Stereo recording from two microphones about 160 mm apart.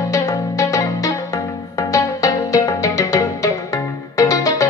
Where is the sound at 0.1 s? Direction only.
20° left (ahead or behind).